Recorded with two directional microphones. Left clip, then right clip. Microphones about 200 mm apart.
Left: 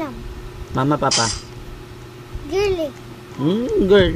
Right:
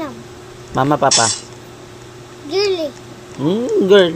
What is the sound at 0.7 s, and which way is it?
Speech, 15° left (ahead or behind).